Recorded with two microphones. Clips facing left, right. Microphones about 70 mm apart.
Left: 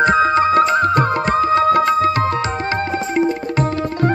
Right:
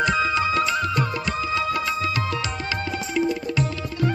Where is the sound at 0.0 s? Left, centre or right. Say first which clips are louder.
Left 8 dB; left.